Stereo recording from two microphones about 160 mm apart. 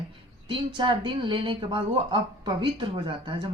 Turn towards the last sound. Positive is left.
turn(degrees=-30)  # may be behind; listen again after turning